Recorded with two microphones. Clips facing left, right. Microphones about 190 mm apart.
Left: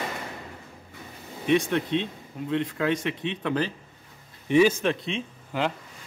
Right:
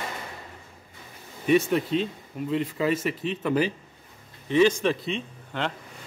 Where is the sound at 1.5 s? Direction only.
5° right (ahead or behind).